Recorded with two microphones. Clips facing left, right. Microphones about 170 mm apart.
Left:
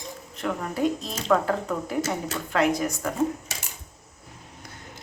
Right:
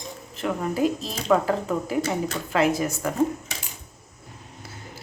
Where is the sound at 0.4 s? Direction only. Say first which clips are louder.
Right 2 dB; 5° right (ahead or behind).